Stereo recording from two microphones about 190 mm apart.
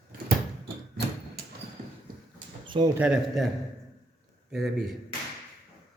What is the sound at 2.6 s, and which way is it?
Speech, 20° right (ahead or behind).